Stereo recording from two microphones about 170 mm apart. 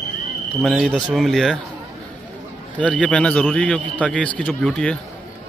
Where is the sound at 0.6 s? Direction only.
Centre (ahead or behind).